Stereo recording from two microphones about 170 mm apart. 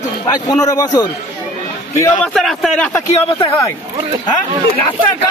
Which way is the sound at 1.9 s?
15° left (ahead or behind).